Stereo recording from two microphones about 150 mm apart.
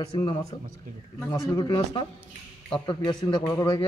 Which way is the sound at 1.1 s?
15° left (ahead or behind).